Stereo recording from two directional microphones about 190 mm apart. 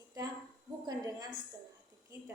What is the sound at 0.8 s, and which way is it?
Speech, 20° right (ahead or behind).